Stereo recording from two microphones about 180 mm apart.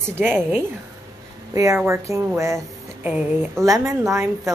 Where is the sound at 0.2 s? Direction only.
10° right (ahead or behind).